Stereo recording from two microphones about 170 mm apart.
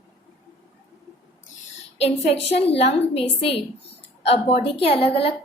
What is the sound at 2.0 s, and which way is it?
A woman's voice, 35° left (ahead or behind).